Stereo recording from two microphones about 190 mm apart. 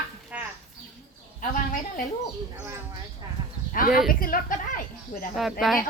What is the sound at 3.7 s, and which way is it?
A woman's voice, 45° left (ahead or behind).